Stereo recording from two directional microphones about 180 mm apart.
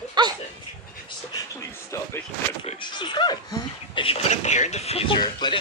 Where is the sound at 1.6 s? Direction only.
15° left (ahead or behind).